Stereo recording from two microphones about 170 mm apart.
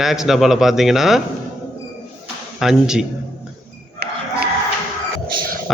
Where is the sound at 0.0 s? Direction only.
Centre (ahead or behind).